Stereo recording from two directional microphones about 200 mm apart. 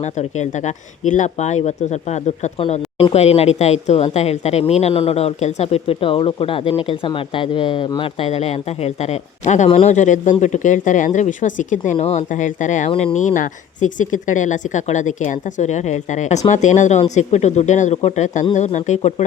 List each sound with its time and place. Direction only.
0.0 s speech: 35° left (ahead or behind)
12.9 s speech: 25° left (ahead or behind)
13.1 s speech: 40° left (ahead or behind)